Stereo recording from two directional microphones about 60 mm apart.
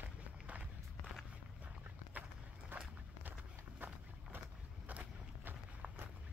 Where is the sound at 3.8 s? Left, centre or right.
Right.